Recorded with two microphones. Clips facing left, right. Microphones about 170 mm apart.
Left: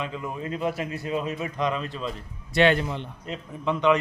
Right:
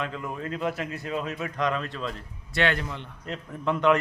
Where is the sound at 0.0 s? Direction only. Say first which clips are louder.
Left 1 dB; 5° left (ahead or behind).